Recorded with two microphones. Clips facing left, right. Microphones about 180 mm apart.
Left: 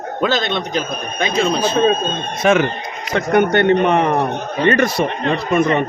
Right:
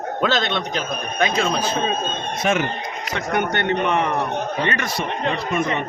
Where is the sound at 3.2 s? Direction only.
40° left (ahead or behind).